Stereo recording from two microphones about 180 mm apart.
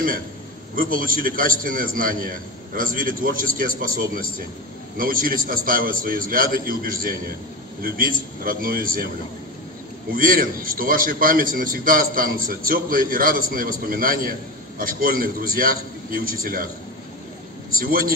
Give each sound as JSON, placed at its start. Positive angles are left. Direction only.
{"t": 0.7, "sound": "a man's voice", "side_deg": -50}
{"t": 10.1, "sound": "a man's voice", "side_deg": -50}
{"t": 17.7, "sound": "a man's voice", "side_deg": -55}